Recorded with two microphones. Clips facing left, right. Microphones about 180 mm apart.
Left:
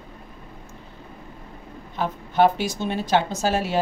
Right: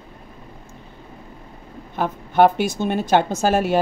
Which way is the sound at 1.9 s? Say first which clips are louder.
Right 4 dB; 55° right (ahead or behind).